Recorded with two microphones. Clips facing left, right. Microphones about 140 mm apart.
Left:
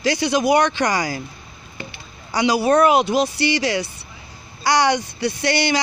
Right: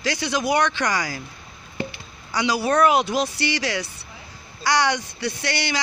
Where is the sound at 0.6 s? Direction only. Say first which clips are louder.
Left 3 dB; 35° left (ahead or behind).